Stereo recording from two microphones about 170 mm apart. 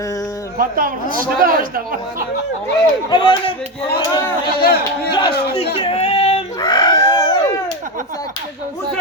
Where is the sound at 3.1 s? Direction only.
25° left (ahead or behind).